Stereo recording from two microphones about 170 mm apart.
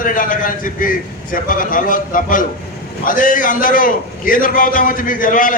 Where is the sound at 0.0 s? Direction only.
55° left (ahead or behind).